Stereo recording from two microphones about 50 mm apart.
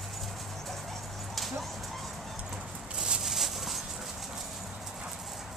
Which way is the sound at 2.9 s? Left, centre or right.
Centre.